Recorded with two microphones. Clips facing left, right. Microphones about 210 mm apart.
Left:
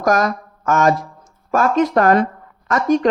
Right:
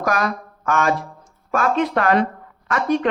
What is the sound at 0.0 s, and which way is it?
Speech, 45° left (ahead or behind).